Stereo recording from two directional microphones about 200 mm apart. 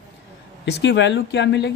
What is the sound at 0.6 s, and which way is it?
Speech, 60° left (ahead or behind).